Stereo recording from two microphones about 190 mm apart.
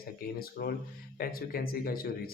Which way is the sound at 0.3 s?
50° left (ahead or behind).